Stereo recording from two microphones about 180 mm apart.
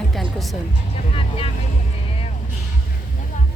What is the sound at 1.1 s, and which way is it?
Vehicle, 30° left (ahead or behind).